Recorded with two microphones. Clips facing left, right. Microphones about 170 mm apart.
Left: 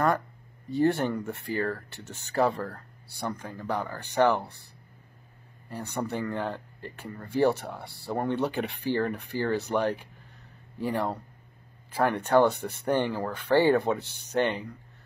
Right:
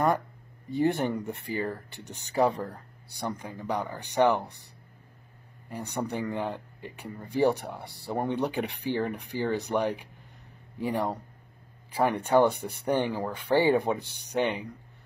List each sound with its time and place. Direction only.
0.7 s speech: 15° right (ahead or behind)
5.7 s speech: 15° right (ahead or behind)